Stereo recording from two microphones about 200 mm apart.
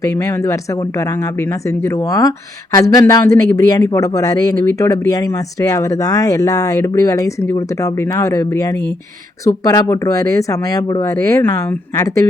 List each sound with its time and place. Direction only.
0.0 s speech: 15° left (ahead or behind)